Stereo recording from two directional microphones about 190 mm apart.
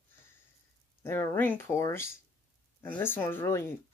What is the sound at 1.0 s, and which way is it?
Speech, 10° left (ahead or behind).